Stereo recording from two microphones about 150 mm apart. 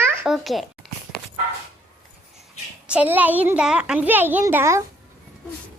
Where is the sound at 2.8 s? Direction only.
10° right (ahead or behind).